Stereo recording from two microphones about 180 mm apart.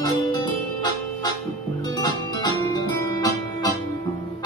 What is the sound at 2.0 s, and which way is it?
Music, 20° left (ahead or behind).